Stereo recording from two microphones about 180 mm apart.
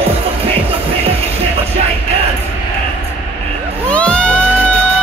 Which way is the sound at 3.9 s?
5° left (ahead or behind).